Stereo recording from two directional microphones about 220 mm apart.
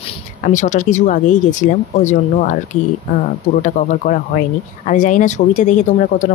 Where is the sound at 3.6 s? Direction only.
35° left (ahead or behind).